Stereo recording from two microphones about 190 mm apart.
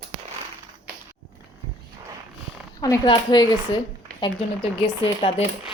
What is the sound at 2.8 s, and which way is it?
Speech, 20° left (ahead or behind).